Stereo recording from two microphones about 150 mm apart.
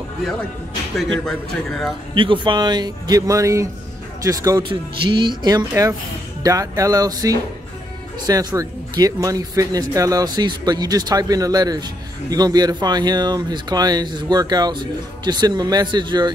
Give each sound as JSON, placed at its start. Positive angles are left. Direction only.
{"t": 2.1, "sound": "speech", "side_deg": -35}